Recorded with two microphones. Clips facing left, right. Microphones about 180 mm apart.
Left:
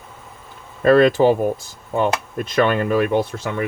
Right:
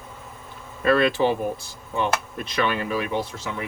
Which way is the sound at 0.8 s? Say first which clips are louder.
Left 7 dB; 45° left (ahead or behind).